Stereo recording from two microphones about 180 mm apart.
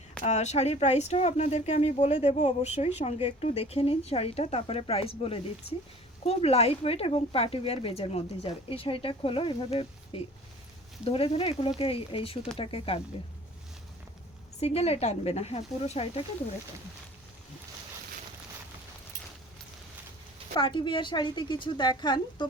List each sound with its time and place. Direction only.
0.3 s speech: 40° left (ahead or behind)
14.6 s speech: 35° left (ahead or behind)
20.6 s speech: 25° left (ahead or behind)